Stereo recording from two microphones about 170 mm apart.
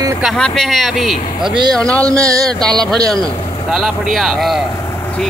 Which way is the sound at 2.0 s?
20° right (ahead or behind).